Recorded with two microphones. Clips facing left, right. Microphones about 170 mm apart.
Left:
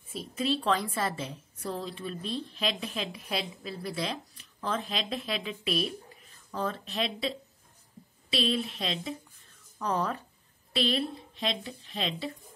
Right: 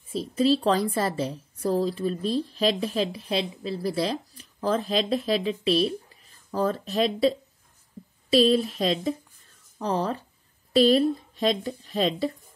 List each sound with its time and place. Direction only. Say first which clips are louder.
0.1 s a woman's voice: right 8 dB; 35° right (ahead or behind)
9.8 s a woman's voice: right 4 dB; 30° right (ahead or behind)
10.7 s a woman's voice: right 11 dB; 40° right (ahead or behind)